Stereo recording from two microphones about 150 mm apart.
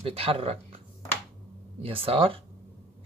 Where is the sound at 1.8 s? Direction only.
40° right (ahead or behind).